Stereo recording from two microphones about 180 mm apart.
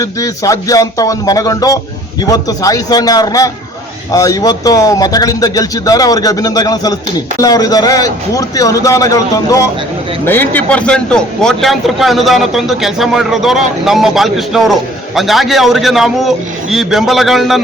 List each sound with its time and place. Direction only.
0.0 s a man's voice: 20° left (ahead or behind); by 17.6 s centre (ahead or behind)